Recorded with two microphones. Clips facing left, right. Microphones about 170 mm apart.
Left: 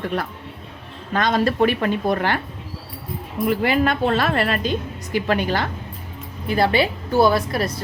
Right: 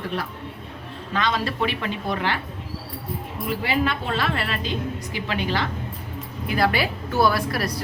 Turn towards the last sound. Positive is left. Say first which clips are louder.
# left 3 dB
turn(degrees=25)  # may be behind; listen again after turning